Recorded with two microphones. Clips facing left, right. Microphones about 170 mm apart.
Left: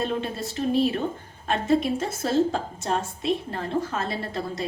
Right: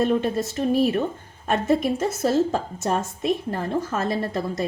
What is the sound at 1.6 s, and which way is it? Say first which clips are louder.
Speech: even; 40° right (ahead or behind).